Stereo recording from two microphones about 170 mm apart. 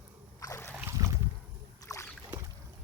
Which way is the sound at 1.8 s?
15° left (ahead or behind).